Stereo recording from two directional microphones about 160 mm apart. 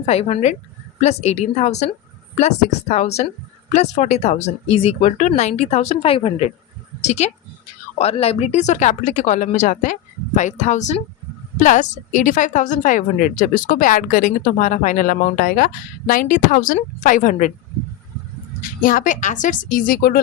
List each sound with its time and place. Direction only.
0.0 s a woman's voice: 40° left (ahead or behind)
18.8 s a woman's voice: 60° left (ahead or behind)